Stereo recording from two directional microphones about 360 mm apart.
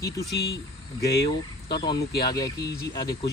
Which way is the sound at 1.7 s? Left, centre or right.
Centre.